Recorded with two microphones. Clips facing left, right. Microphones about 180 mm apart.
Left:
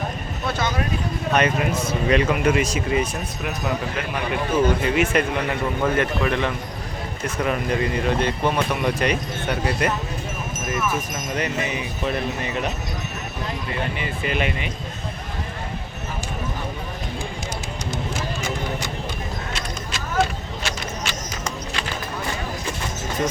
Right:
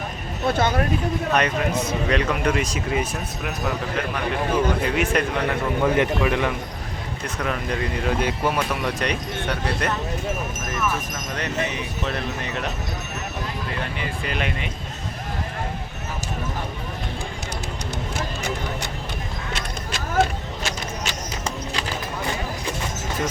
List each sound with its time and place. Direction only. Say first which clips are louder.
0.5 s speech: right 3 dB; 55° right (ahead or behind)
1.3 s speech: left 3 dB; 5° left (ahead or behind)
5.9 s a man's voice: right 1 dB; 15° right (ahead or behind)
7.4 s speech: left 3 dB; centre (ahead or behind)
11.3 s speech: left 1 dB; 10° left (ahead or behind)
14.0 s speech: left 3 dB; 5° left (ahead or behind)